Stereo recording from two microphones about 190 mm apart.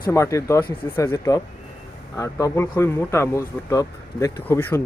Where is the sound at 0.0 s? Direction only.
15° left (ahead or behind).